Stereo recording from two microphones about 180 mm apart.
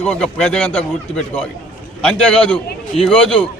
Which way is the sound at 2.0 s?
5° left (ahead or behind).